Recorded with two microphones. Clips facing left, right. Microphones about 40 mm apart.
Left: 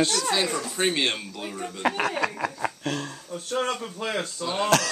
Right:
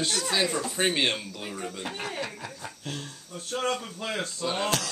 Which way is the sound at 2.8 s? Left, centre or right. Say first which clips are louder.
Left 7 dB; left.